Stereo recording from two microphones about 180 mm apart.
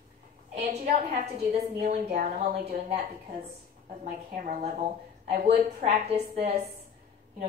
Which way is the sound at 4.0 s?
45° right (ahead or behind).